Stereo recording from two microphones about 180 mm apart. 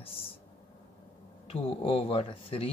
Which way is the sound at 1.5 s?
30° left (ahead or behind).